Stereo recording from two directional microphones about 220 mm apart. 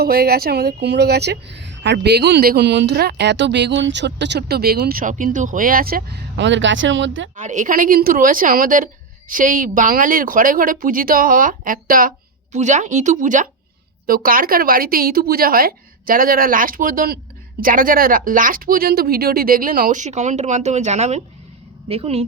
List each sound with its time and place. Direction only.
0.0 s speech: 45° right (ahead or behind)
7.3 s speech: 35° right (ahead or behind)